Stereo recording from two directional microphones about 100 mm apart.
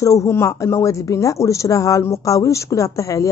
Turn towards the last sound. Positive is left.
turn(degrees=30)  # may be behind; listen again after turning